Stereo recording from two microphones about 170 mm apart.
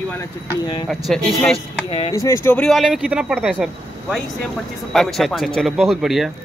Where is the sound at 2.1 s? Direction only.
15° left (ahead or behind); by 6.3 s centre (ahead or behind).